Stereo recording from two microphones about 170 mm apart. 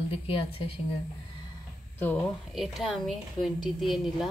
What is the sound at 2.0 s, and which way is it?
Speech, 10° left (ahead or behind).